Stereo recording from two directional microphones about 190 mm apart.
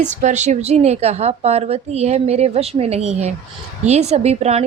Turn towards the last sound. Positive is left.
turn(degrees=-35)  # may be behind; listen again after turning